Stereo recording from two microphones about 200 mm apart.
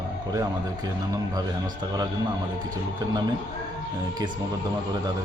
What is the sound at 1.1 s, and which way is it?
Speech, 20° right (ahead or behind).